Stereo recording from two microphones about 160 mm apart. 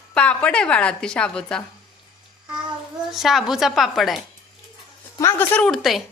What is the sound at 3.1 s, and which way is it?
A woman's voice, centre (ahead or behind).